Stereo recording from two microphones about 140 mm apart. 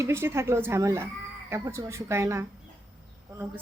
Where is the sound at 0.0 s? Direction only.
15° right (ahead or behind).